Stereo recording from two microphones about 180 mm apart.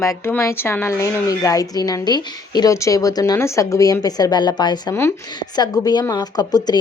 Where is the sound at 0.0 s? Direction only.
15° left (ahead or behind).